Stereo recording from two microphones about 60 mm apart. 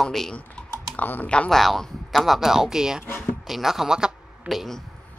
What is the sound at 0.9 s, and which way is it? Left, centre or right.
Speech, left.